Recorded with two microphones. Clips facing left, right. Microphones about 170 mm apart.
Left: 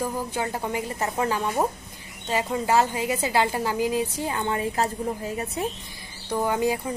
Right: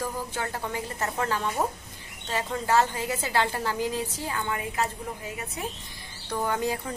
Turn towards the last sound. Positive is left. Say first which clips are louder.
# left 4 dB
turn(degrees=10)  # may be behind; listen again after turning